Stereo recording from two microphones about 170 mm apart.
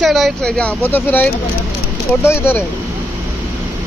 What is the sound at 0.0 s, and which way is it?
Speech, centre (ahead or behind).